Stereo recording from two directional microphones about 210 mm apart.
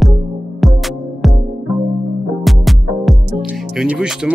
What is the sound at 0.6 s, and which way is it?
Music, centre (ahead or behind).